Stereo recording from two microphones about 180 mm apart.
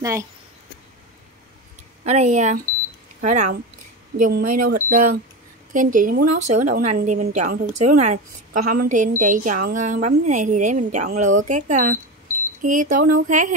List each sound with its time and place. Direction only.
2.0 s a woman's voice: 40° right (ahead or behind)